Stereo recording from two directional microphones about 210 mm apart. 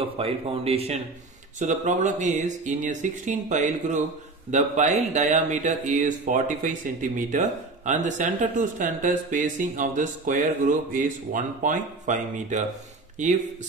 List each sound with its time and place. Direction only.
0.0 s a man's voice: 25° right (ahead or behind)